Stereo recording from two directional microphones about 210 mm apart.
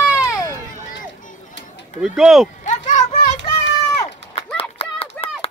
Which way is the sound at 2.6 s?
35° left (ahead or behind).